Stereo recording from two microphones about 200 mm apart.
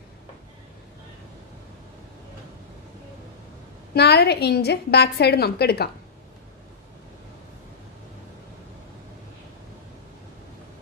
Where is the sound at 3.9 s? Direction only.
55° left (ahead or behind).